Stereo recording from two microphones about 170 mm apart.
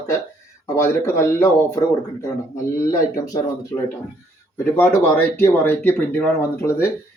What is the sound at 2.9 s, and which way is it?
Speech, 20° left (ahead or behind).